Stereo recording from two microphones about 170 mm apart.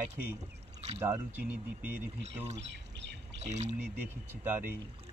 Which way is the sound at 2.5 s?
90° right.